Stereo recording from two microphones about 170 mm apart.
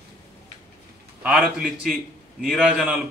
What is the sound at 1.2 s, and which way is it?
A man's voice, 5° right (ahead or behind).